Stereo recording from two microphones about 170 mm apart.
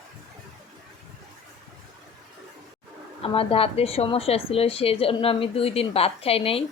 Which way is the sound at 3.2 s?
35° left (ahead or behind).